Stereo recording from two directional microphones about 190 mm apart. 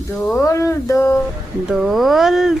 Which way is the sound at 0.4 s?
15° left (ahead or behind).